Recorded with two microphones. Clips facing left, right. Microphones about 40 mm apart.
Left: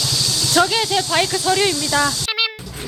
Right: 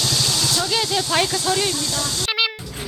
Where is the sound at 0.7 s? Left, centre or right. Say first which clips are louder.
Left 2 dB; centre.